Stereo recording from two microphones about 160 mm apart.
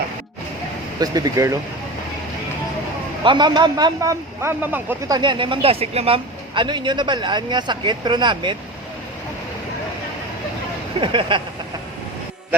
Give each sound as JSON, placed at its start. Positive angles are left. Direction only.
{"t": 0.9, "sound": "speech", "side_deg": -25}
{"t": 3.2, "sound": "speech", "side_deg": -25}
{"t": 5.1, "sound": "speech", "side_deg": -30}
{"t": 11.0, "sound": "speech", "side_deg": -30}